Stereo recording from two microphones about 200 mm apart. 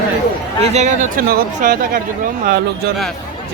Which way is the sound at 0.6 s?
35° right (ahead or behind).